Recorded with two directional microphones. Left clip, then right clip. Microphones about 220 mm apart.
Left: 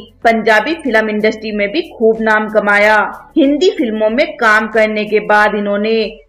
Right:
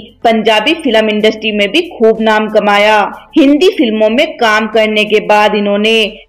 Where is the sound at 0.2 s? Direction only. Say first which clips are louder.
Right 1 dB; 20° right (ahead or behind).